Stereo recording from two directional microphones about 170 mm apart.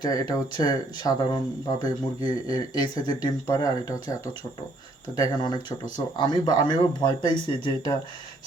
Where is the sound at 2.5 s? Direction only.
25° left (ahead or behind).